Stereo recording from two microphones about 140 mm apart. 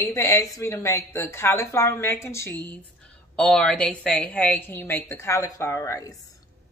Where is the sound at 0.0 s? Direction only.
25° left (ahead or behind).